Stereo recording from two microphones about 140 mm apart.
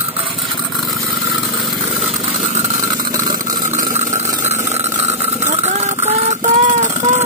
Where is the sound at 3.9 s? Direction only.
60° right (ahead or behind).